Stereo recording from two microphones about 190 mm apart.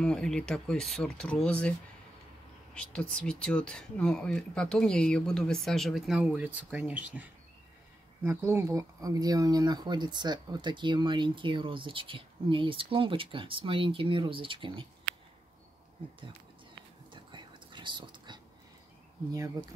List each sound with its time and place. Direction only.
0.0 s speech: 5° left (ahead or behind)
2.7 s speech: 5° left (ahead or behind); by 14.9 s 25° right (ahead or behind)
17.1 s whispering: 25° right (ahead or behind)